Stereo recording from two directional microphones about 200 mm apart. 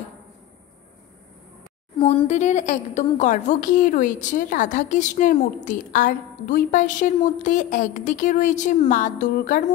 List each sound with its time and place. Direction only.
2.0 s a woman's voice: 30° left (ahead or behind)